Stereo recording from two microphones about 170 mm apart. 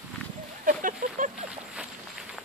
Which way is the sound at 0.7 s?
50° right (ahead or behind).